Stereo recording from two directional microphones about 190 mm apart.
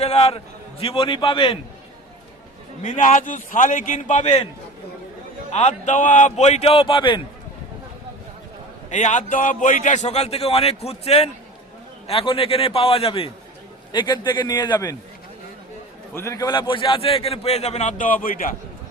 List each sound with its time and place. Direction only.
0.0 s a man's voice: 35° left (ahead or behind)
2.8 s a man's voice: 40° left (ahead or behind)
5.5 s a man's voice: 35° left (ahead or behind)
8.9 s a man's voice: 40° left (ahead or behind); by 14.9 s 15° left (ahead or behind)
16.1 s a man's voice: 15° left (ahead or behind); by 18.5 s 45° left (ahead or behind)